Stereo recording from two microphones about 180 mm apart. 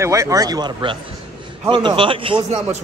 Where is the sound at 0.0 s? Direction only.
15° right (ahead or behind).